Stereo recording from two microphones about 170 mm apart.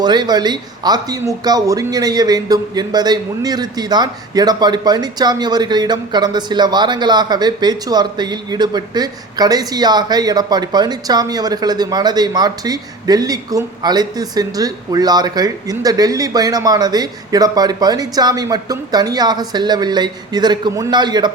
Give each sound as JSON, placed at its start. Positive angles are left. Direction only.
{"t": 0.0, "sound": "speech", "side_deg": -25}